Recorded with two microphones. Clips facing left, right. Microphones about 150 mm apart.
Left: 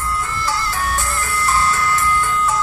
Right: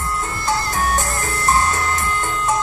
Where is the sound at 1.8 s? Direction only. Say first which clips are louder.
Left 3 dB; 25° right (ahead or behind).